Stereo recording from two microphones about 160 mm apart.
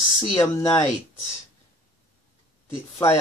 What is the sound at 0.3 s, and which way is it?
Speech, 20° left (ahead or behind).